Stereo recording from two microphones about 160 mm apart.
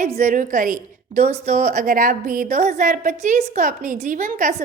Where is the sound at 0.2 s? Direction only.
55° right (ahead or behind).